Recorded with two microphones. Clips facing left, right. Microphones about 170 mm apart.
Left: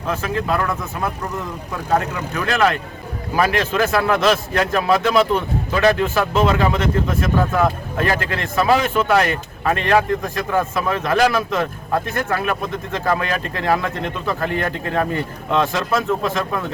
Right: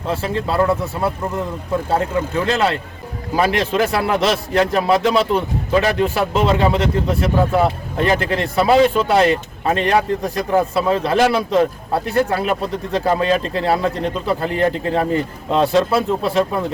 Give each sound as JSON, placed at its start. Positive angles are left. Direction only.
{"t": 0.1, "sound": "a man's voice", "side_deg": -30}
{"t": 8.0, "sound": "a man's voice", "side_deg": -20}